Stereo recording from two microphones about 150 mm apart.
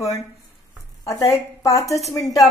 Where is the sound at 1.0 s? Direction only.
20° left (ahead or behind).